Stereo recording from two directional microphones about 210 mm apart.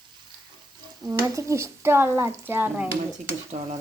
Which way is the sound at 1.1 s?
15° right (ahead or behind).